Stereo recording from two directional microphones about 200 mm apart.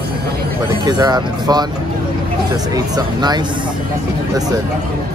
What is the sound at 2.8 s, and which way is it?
Speech, 20° right (ahead or behind).